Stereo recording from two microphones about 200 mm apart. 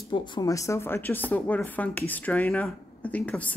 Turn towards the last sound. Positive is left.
turn(degrees=5)  # may be behind; listen again after turning